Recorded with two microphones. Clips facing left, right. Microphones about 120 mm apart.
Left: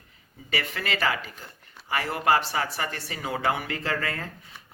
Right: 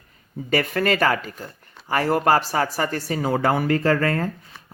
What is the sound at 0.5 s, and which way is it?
Speech, 45° right (ahead or behind).